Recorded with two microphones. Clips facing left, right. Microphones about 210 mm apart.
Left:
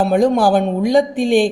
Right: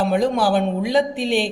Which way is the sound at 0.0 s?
45° left (ahead or behind).